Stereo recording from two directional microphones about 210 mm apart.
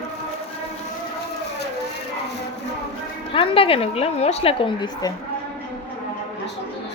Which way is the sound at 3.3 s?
25° left (ahead or behind).